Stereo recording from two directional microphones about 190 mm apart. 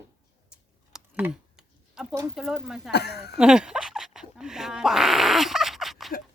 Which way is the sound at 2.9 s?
60° left (ahead or behind).